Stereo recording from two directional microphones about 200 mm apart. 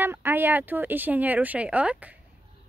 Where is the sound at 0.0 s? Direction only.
10° right (ahead or behind).